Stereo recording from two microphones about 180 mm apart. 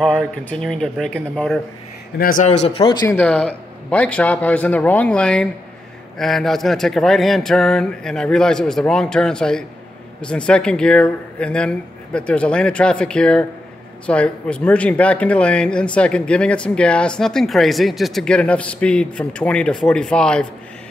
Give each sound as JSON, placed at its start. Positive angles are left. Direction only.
{"t": 0.0, "sound": "speech", "side_deg": 5}
{"t": 2.1, "sound": "a man's voice", "side_deg": 55}
{"t": 2.4, "sound": "speech", "side_deg": 40}
{"t": 3.2, "sound": "a man's voice", "side_deg": 5}